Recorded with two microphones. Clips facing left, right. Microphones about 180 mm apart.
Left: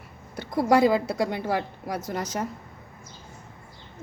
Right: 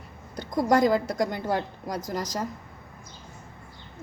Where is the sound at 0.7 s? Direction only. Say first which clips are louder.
Left 2 dB; 10° left (ahead or behind).